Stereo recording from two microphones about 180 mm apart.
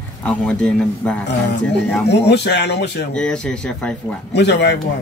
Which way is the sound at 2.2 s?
70° left (ahead or behind).